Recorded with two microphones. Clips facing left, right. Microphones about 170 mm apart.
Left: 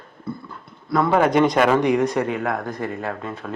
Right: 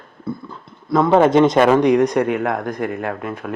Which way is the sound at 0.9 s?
25° right (ahead or behind).